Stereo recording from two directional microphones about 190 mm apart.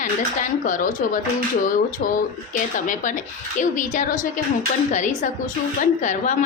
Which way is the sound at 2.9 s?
40° left (ahead or behind).